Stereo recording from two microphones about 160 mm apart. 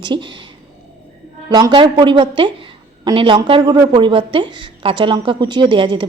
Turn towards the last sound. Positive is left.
turn(degrees=-30)  # may be behind; listen again after turning